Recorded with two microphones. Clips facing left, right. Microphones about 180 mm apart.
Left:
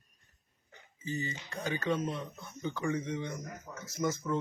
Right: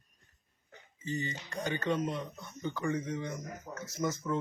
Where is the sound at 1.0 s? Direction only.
5° left (ahead or behind).